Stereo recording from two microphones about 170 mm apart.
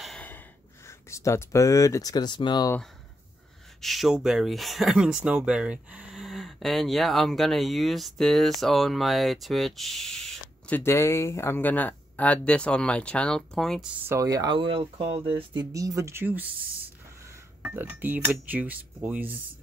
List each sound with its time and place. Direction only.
0.0 s gasp: 5° left (ahead or behind)
0.8 s speech: 15° left (ahead or behind)
3.8 s speech: centre (ahead or behind)
10.8 s speech: 15° left (ahead or behind)
14.0 s speech: 20° right (ahead or behind)